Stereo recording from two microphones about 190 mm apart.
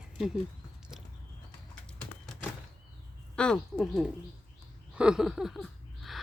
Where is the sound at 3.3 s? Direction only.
5° left (ahead or behind).